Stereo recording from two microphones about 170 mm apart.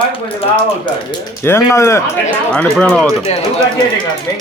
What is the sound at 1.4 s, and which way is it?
Speech, 15° left (ahead or behind).